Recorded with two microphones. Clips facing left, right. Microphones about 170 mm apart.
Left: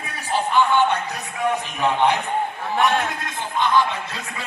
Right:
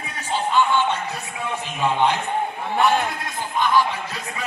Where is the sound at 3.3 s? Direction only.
20° left (ahead or behind).